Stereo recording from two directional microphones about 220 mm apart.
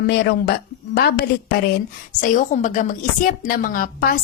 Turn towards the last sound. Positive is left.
turn(degrees=40)  # may be behind; listen again after turning